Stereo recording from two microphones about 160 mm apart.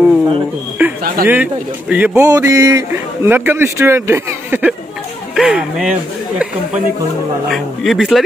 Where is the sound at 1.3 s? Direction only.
10° right (ahead or behind).